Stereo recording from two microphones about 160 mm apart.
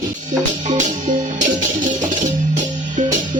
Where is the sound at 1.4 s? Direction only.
50° right (ahead or behind).